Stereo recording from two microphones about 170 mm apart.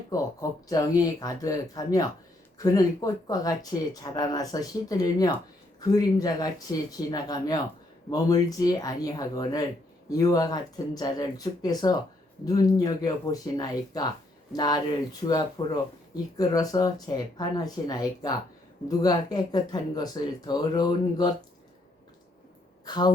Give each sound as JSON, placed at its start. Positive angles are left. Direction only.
{"t": 0.1, "sound": "speech", "side_deg": 20}
{"t": 22.9, "sound": "speech", "side_deg": 25}